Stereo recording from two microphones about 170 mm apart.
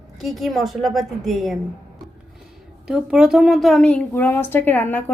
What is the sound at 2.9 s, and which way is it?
A woman's voice, 5° right (ahead or behind).